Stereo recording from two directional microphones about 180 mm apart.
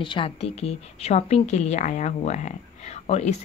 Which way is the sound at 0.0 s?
30° left (ahead or behind).